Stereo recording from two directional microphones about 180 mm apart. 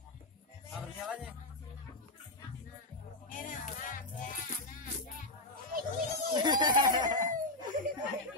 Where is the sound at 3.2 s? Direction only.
50° left (ahead or behind).